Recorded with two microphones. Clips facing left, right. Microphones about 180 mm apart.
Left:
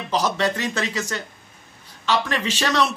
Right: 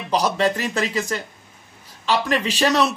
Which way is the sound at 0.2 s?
35° right (ahead or behind).